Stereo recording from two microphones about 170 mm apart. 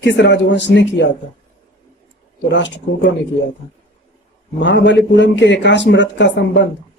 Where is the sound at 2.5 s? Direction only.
90° left.